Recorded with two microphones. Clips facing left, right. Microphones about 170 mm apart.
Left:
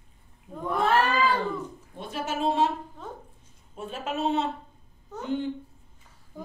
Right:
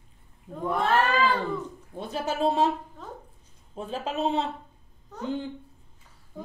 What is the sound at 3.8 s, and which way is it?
Speech, 35° right (ahead or behind).